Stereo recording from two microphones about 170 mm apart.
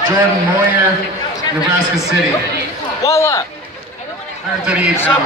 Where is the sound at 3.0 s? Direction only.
20° left (ahead or behind).